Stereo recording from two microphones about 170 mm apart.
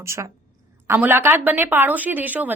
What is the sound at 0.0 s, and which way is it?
Speech, 15° right (ahead or behind).